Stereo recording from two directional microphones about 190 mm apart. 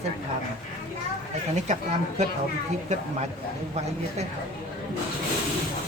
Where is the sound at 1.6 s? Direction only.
35° right (ahead or behind).